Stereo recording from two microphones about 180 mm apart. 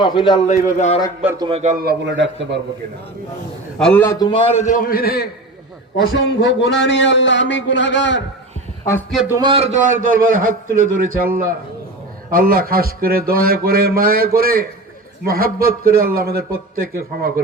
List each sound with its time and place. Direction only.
0.0 s a man's voice: 25° left (ahead or behind)
0.5 s speech: 40° left (ahead or behind)
1.4 s a man's voice: 30° right (ahead or behind)
1.6 s a man's voice: 55° right (ahead or behind); by 2.6 s 85° right
3.8 s a man's voice: 5° left (ahead or behind)
4.2 s a man's voice: 30° left (ahead or behind)
4.6 s a man's voice: 50° left (ahead or behind)
6.1 s speech: 85° left
9.4 s a man's voice: 30° right (ahead or behind)
9.8 s a man's voice: 50° right (ahead or behind)